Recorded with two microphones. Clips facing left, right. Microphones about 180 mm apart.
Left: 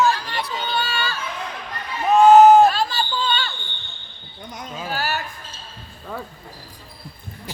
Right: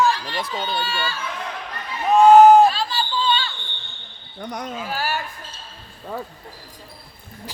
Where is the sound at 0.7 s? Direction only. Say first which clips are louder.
Left 1 dB; 45° left (ahead or behind).